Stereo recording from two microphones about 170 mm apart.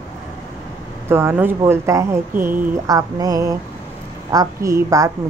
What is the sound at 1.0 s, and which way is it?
A woman's voice, 15° right (ahead or behind).